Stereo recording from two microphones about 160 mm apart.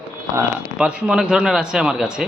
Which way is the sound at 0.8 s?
5° right (ahead or behind).